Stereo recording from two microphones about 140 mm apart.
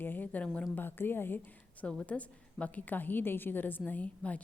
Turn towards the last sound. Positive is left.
turn(degrees=10)  # may be behind; listen again after turning